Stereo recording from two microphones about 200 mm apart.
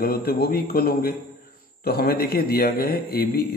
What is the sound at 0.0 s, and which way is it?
Speech, 50° left (ahead or behind).